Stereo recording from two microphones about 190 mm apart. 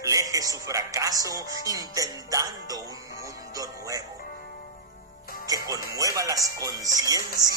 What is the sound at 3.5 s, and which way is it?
Speech, 15° right (ahead or behind).